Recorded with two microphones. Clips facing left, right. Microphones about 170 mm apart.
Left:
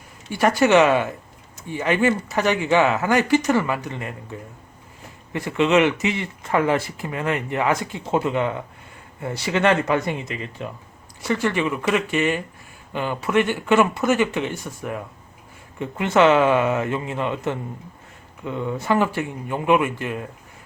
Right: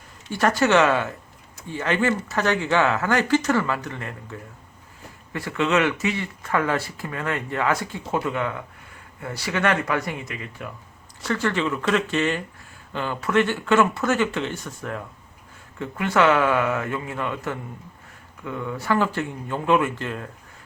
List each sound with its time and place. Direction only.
0.3 s speech: 15° left (ahead or behind)